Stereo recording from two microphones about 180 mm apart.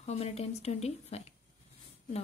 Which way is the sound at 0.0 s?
35° left (ahead or behind).